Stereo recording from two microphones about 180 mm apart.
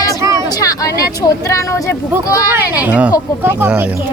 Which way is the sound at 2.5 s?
10° right (ahead or behind).